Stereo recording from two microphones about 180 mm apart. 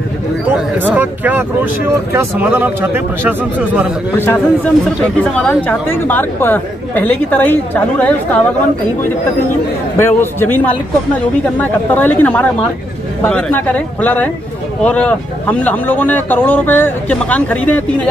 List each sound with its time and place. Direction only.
0.6 s a man's voice: 10° right (ahead or behind)
4.2 s a woman's voice: 10° left (ahead or behind)
9.9 s a woman's voice: 10° left (ahead or behind)